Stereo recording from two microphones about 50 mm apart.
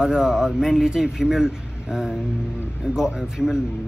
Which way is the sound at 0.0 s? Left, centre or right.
Centre.